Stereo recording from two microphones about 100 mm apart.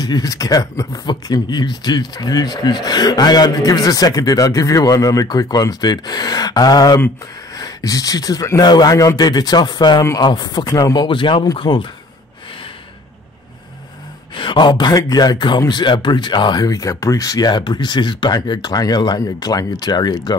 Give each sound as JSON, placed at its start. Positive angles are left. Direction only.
{"t": 0.0, "sound": "speech", "side_deg": 40}
{"t": 11.1, "sound": "speech", "side_deg": 55}
{"t": 14.3, "sound": "speech", "side_deg": 55}